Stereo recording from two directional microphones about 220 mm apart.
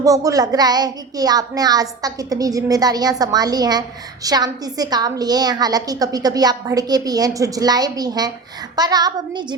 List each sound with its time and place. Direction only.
0.0 s speech: 15° right (ahead or behind)